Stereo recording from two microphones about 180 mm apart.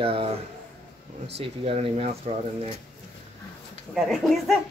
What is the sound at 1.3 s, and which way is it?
Speech, 30° right (ahead or behind).